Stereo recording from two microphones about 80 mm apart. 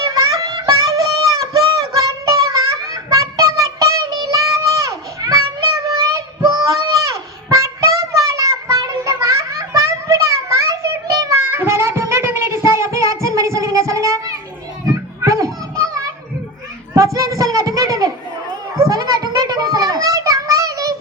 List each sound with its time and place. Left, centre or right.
0.0 s music: right
7.5 s a sound: right
11.3 s child singing: right
14.8 s children playing: right
17.2 s child singing: right
18.9 s a sound: right